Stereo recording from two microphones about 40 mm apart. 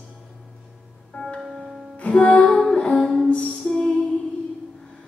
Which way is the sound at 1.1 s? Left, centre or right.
Left.